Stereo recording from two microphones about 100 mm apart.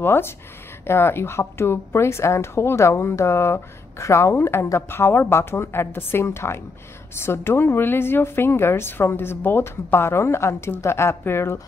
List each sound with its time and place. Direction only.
0.0 s a woman's voice: 25° left (ahead or behind)